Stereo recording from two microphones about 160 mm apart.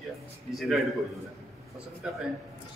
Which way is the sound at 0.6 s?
Centre (ahead or behind).